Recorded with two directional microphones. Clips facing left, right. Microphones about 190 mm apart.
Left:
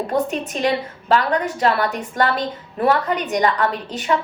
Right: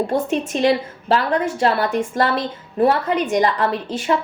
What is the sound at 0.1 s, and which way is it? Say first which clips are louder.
A woman's voice: right 1 dB; 30° right (ahead or behind).